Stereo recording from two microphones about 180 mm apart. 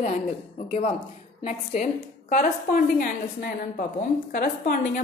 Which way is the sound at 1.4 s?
40° left (ahead or behind).